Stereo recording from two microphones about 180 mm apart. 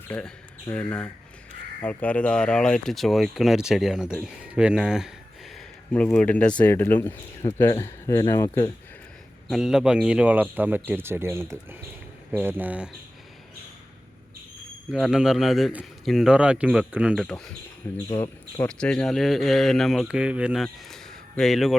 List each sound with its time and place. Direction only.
0.1 s speech: 5° left (ahead or behind)
5.5 s speech: 5° left (ahead or behind)
9.5 s speech: 5° right (ahead or behind)
14.9 s speech: centre (ahead or behind)
17.2 s speech: 5° left (ahead or behind)
18.7 s speech: 5° left (ahead or behind)